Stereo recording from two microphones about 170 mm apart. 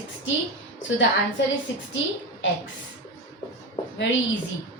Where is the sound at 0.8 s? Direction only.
90° left.